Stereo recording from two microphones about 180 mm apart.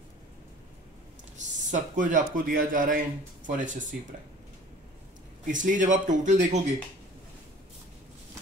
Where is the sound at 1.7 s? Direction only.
45° right (ahead or behind).